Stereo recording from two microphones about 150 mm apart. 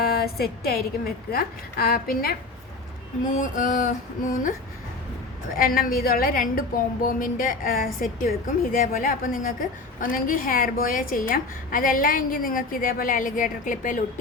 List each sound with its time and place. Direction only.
0.0 s a woman's voice: 90° left
1.3 s a woman's voice: 80° left
3.2 s a sound: 60° left (ahead or behind)
5.5 s a woman's voice: 70° left (ahead or behind)